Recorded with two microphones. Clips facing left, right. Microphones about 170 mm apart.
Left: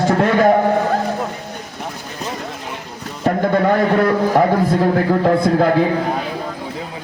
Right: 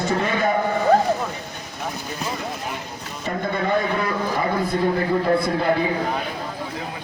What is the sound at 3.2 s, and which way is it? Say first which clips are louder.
Speech: left 9 dB; 90° left.